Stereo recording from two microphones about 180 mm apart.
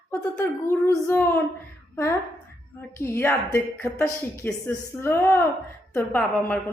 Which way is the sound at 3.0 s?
15° left (ahead or behind).